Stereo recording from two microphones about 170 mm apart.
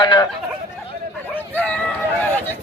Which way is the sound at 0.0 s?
25° left (ahead or behind).